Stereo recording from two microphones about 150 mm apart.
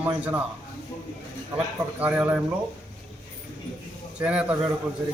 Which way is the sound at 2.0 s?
10° right (ahead or behind).